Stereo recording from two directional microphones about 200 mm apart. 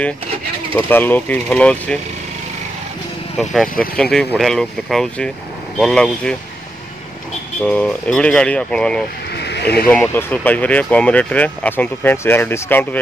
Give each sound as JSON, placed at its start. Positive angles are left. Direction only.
{"t": 0.7, "sound": "speech", "side_deg": 10}
{"t": 3.3, "sound": "speech", "side_deg": 5}
{"t": 7.6, "sound": "speech", "side_deg": 5}
{"t": 9.3, "sound": "vehicle", "side_deg": 55}
{"t": 9.8, "sound": "speech", "side_deg": 10}